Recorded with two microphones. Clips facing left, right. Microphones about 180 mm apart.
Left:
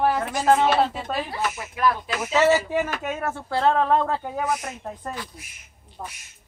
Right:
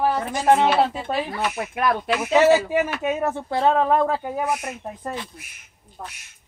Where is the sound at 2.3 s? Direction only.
10° right (ahead or behind).